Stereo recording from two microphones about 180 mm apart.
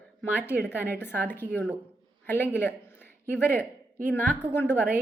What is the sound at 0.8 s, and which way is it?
Speech, 65° right (ahead or behind).